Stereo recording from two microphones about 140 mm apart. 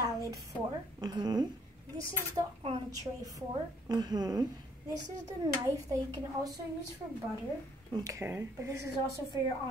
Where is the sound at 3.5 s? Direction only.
30° right (ahead or behind).